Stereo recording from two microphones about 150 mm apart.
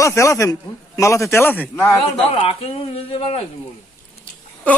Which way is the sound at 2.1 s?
40° left (ahead or behind).